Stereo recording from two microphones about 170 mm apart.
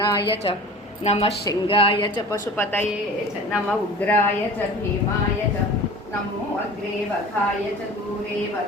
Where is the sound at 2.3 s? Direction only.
10° left (ahead or behind).